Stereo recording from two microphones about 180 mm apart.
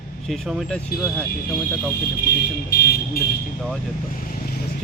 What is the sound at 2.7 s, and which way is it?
Vehicle, 55° left (ahead or behind).